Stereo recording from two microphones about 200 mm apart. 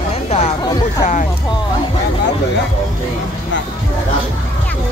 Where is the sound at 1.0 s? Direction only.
40° left (ahead or behind).